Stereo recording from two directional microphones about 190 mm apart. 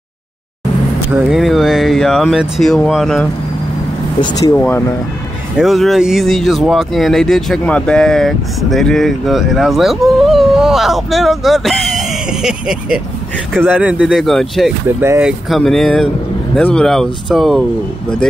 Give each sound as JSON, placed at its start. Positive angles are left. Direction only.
{"t": 1.1, "sound": "speech", "side_deg": 0}
{"t": 4.2, "sound": "speech", "side_deg": 25}
{"t": 4.6, "sound": "speech", "side_deg": 10}
{"t": 5.6, "sound": "speech", "side_deg": 0}
{"t": 15.0, "sound": "speech", "side_deg": -10}